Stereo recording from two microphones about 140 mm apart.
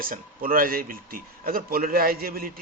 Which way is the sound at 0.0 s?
90° right.